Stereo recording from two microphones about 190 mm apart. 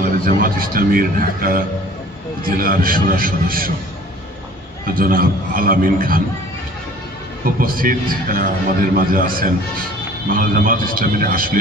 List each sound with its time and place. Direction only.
0.0 s a man's voice: 50° right (ahead or behind)
4.8 s a man's voice: 50° right (ahead or behind)
7.6 s a man's voice: 50° right (ahead or behind)